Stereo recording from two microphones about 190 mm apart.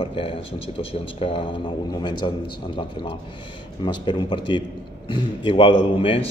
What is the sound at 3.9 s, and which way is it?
Speech, 25° left (ahead or behind).